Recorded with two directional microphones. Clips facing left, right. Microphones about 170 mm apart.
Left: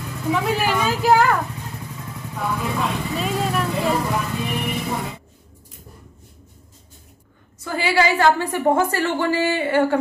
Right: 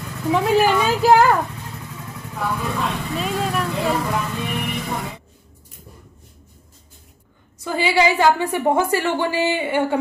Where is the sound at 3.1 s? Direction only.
Centre (ahead or behind).